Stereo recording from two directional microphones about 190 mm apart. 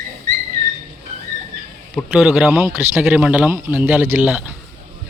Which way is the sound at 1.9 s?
5° right (ahead or behind).